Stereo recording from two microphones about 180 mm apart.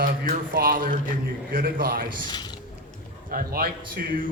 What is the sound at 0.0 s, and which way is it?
A man's voice, 55° right (ahead or behind).